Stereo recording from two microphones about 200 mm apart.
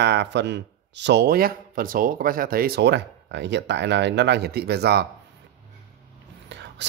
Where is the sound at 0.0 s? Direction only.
60° right (ahead or behind).